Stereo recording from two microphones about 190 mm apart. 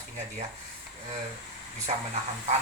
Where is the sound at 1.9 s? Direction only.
35° right (ahead or behind).